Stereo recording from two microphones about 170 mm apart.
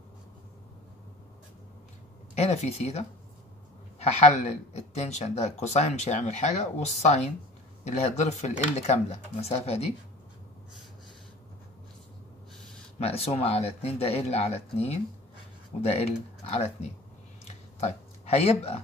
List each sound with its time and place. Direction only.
2.3 s speech: 40° left (ahead or behind)
13.0 s speech: 35° left (ahead or behind)